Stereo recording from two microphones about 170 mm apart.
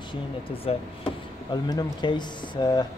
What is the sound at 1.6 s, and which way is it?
Speech, 25° left (ahead or behind).